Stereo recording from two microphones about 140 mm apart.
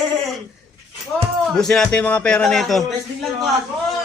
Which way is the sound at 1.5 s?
5° left (ahead or behind).